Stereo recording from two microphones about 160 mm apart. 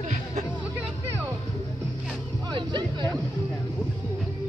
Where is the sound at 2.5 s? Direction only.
30° right (ahead or behind).